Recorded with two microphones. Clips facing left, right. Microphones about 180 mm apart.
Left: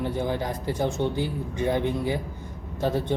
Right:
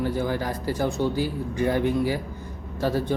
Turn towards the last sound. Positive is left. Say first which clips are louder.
# right 1 dB
turn(degrees=20)  # may be behind; listen again after turning